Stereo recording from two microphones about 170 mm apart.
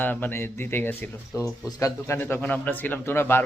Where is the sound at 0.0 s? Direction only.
10° left (ahead or behind).